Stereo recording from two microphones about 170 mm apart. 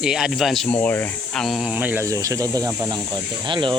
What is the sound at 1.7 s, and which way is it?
Speech, 10° right (ahead or behind).